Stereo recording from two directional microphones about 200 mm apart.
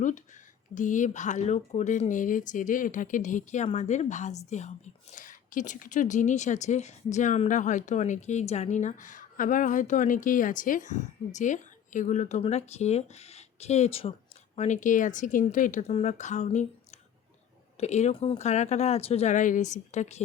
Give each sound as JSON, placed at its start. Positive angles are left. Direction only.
{"t": 0.7, "sound": "a woman's voice", "side_deg": 40}